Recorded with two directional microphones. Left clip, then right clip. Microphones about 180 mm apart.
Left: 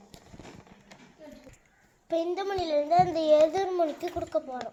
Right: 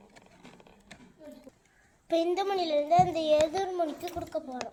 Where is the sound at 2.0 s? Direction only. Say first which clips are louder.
Right 2 dB; centre (ahead or behind); by 4.6 s 35° left (ahead or behind).